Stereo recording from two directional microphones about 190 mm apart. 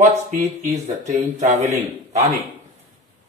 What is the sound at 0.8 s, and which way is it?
Speech, 35° right (ahead or behind).